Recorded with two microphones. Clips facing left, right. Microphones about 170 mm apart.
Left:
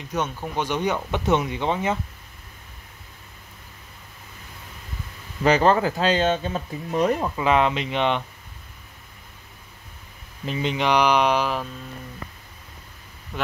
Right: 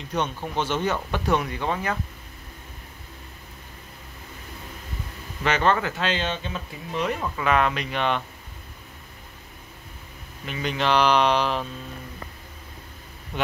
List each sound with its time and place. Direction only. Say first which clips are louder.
0.1 s speech: even; 10° left (ahead or behind)
5.4 s speech: left 4 dB; 35° left (ahead or behind)
7.2 s speech: left 2 dB; 25° left (ahead or behind)
10.4 s speech: left 4 dB; 30° left (ahead or behind)
10.7 s speech: even; 15° left (ahead or behind)